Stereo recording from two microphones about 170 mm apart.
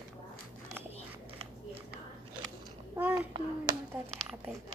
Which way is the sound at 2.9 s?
10° right (ahead or behind).